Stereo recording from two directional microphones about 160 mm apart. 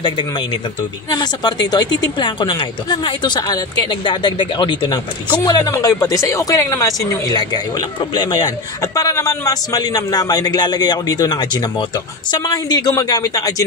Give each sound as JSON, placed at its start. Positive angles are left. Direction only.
{"t": 1.1, "sound": "speech", "side_deg": 25}